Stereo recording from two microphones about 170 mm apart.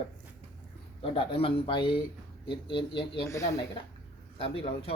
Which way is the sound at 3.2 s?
15° left (ahead or behind).